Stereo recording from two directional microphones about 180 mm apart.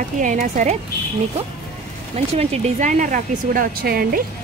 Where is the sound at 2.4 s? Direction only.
40° right (ahead or behind).